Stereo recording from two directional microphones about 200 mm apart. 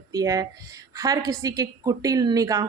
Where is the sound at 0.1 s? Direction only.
20° right (ahead or behind).